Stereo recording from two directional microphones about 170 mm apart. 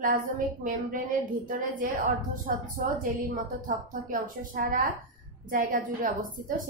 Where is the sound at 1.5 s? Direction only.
50° right (ahead or behind).